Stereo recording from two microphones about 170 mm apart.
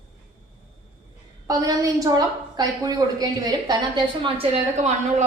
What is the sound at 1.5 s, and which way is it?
A woman's voice, 20° right (ahead or behind).